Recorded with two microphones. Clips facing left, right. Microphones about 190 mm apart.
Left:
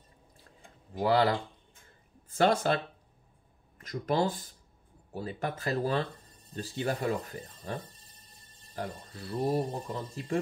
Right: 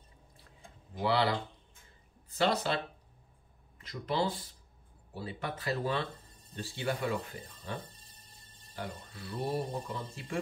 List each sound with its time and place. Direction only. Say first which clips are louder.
1.0 s speech: left 4 dB; 45° left (ahead or behind)